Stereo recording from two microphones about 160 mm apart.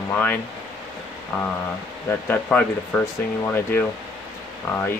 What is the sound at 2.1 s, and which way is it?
Speech, 10° left (ahead or behind).